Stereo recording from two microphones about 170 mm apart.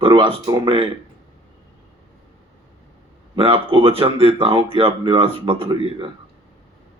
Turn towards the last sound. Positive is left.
turn(degrees=-30)  # may be behind; listen again after turning